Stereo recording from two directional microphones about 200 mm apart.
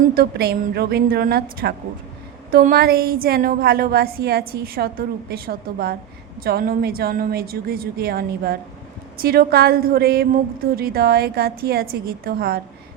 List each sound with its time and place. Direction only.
0.1 s a woman's voice: 50° right (ahead or behind)